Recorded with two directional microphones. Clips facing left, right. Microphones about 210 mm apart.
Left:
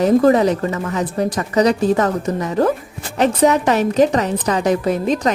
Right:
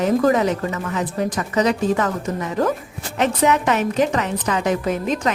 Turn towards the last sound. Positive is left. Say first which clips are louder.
# left 4 dB
turn(degrees=35)  # may be behind; listen again after turning